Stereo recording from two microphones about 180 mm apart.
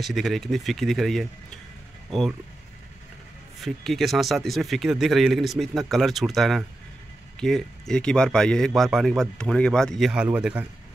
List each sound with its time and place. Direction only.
0.0 s speech: centre (ahead or behind)
3.6 s speech: centre (ahead or behind)